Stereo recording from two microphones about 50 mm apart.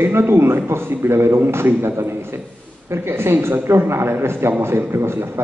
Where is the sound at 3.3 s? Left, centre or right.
Right.